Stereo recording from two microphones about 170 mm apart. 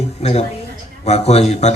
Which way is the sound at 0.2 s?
40° left (ahead or behind).